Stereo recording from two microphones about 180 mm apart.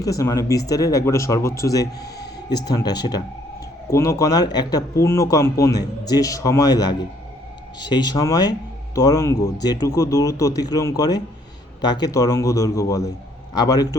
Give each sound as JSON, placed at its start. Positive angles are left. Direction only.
{"t": 0.0, "sound": "speech", "side_deg": 20}